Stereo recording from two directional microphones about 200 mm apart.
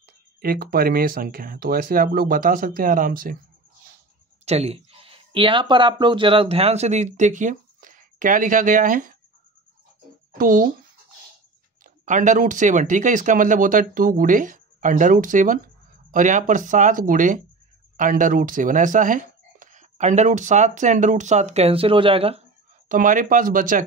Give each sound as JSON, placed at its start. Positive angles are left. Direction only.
{"t": 0.4, "sound": "speech", "side_deg": -50}
{"t": 4.5, "sound": "speech", "side_deg": -30}
{"t": 10.3, "sound": "speech", "side_deg": -45}
{"t": 11.8, "sound": "speech", "side_deg": -40}
{"t": 22.8, "sound": "speech", "side_deg": -40}